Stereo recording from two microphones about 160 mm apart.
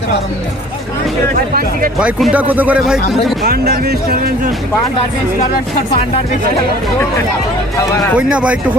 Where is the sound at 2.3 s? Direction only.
10° right (ahead or behind).